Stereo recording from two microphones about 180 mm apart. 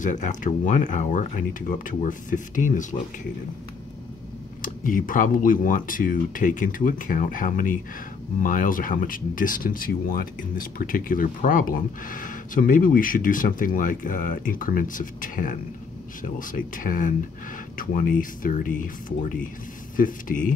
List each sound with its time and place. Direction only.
0.0 s speech: 45° left (ahead or behind)
4.6 s speech: 50° left (ahead or behind)